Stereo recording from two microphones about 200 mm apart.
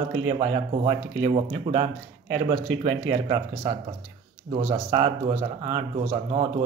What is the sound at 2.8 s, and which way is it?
Speech, 25° right (ahead or behind).